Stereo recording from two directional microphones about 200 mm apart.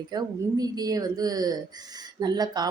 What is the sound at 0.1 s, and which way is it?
A woman's voice, 20° right (ahead or behind).